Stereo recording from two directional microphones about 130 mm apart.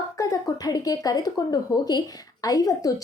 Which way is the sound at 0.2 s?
25° left (ahead or behind).